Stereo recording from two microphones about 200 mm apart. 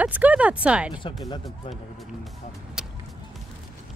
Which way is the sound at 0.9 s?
25° left (ahead or behind).